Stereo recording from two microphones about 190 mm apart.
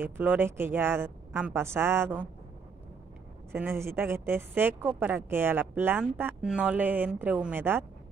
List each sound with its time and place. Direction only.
0.0 s a woman's voice: 10° right (ahead or behind)
3.5 s a woman's voice: 10° right (ahead or behind)